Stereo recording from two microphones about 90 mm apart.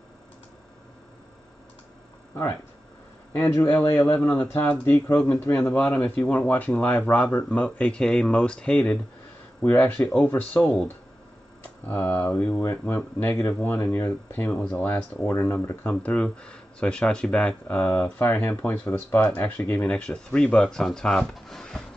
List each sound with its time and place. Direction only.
3.9 s speech: 20° left (ahead or behind)
5.6 s speech: 10° left (ahead or behind)
11.8 s speech: 20° left (ahead or behind)
15.9 s speech: 15° left (ahead or behind)